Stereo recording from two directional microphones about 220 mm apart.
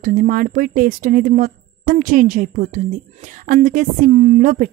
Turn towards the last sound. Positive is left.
turn(degrees=-35)  # may be behind; listen again after turning